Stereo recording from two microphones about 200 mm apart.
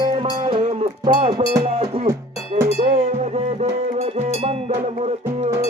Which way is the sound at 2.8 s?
35° right (ahead or behind).